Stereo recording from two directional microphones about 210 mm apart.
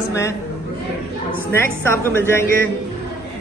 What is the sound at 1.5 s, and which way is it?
Speech, 10° left (ahead or behind).